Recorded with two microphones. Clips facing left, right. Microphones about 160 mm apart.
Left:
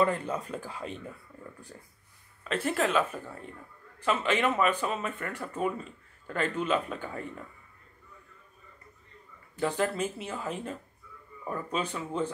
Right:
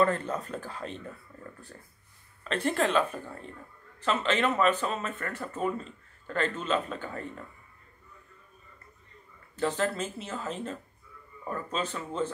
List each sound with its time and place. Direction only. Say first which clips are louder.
0.0 s speech: right 1 dB; 10° left (ahead or behind)
1.3 s a sound: even; 10° left (ahead or behind)
2.4 s speech: right 1 dB; 5° left (ahead or behind)
9.6 s speech: even; 10° left (ahead or behind)